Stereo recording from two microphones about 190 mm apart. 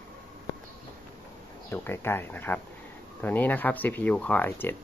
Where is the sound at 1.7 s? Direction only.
10° left (ahead or behind).